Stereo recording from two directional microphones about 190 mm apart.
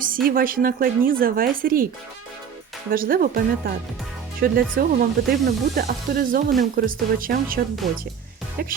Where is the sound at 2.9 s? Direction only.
50° right (ahead or behind).